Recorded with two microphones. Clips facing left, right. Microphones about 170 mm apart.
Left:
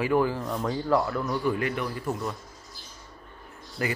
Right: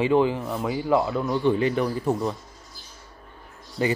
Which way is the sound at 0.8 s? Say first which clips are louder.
Right 3 dB; 20° right (ahead or behind).